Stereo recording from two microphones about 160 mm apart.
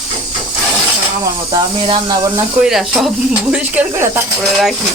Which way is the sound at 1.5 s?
25° right (ahead or behind).